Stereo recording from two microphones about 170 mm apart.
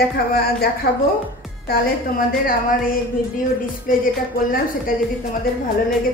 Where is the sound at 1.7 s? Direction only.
60° left (ahead or behind).